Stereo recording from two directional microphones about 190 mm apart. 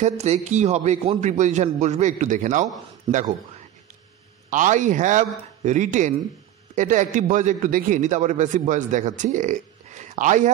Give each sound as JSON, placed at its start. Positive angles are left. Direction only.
{"t": 0.0, "sound": "a man's voice", "side_deg": -35}
{"t": 4.5, "sound": "a man's voice", "side_deg": -40}